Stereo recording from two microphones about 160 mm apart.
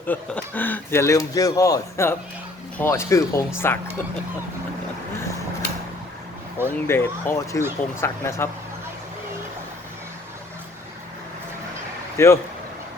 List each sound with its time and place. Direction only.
0.1 s speech: 10° left (ahead or behind)
6.7 s speech: 15° left (ahead or behind)
12.1 s speech: 20° left (ahead or behind)